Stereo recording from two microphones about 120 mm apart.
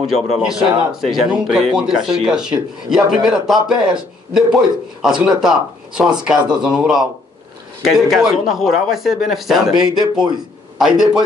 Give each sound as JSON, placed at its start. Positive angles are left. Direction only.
{"t": 0.0, "sound": "speech", "side_deg": -5}